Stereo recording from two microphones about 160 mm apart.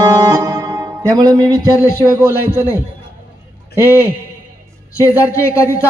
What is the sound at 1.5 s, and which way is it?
Speech, 15° right (ahead or behind).